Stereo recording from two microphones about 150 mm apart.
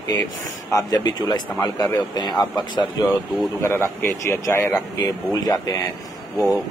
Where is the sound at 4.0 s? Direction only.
15° left (ahead or behind).